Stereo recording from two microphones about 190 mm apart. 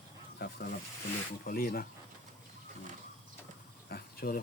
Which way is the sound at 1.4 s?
50° left (ahead or behind).